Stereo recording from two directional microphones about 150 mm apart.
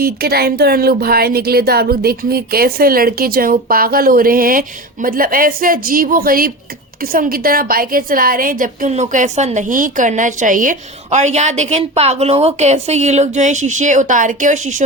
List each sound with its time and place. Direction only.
0.0 s a woman's voice: 90° right; by 14.8 s 55° right (ahead or behind)